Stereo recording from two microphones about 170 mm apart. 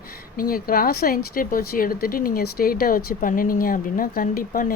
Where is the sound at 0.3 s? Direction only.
60° left (ahead or behind).